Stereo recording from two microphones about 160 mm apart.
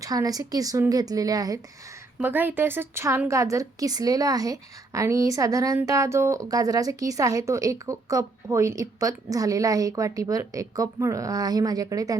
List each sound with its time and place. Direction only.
0.0 s a woman's voice: 20° right (ahead or behind)
2.1 s a woman's voice: 10° right (ahead or behind)